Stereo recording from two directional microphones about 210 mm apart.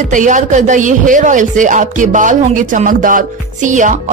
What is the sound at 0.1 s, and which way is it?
A man's voice, 35° right (ahead or behind).